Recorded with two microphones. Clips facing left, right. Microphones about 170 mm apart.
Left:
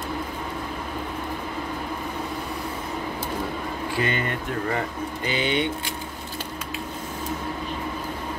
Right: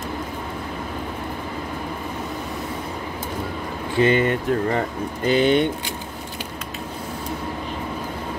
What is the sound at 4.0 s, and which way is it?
Speech, 25° right (ahead or behind).